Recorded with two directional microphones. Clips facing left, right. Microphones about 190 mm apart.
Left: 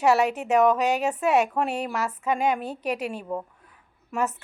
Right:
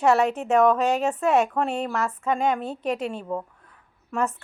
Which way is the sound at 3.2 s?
5° left (ahead or behind).